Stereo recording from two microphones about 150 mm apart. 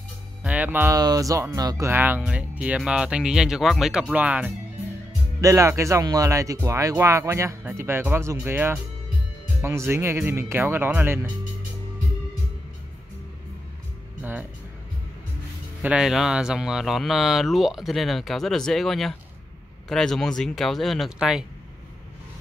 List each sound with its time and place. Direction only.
0.4 s music: 10° right (ahead or behind)
0.9 s speech: 25° right (ahead or behind); by 4.6 s 10° right (ahead or behind)
5.4 s speech: 20° right (ahead or behind)
14.2 s music: 15° right (ahead or behind)
15.8 s speech: 5° right (ahead or behind)